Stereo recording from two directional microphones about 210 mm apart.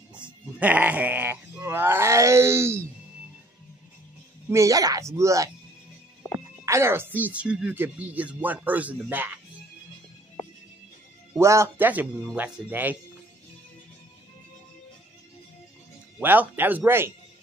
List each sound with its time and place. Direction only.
0.1 s speech: 5° right (ahead or behind)
4.5 s speech: 15° right (ahead or behind)
6.6 s speech: 15° right (ahead or behind)
11.3 s speech: 15° right (ahead or behind)
16.2 s speech: 10° right (ahead or behind)